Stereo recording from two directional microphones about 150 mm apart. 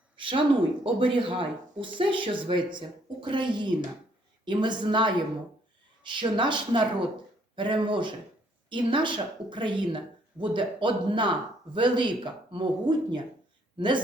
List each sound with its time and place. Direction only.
0.2 s speech: 35° right (ahead or behind)